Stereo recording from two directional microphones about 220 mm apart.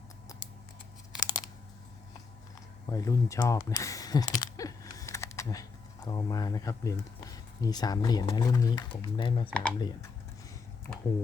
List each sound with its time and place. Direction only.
1.1 s crunch: 20° left (ahead or behind)
2.9 s speech: 15° left (ahead or behind)
9.5 s speech: 5° left (ahead or behind)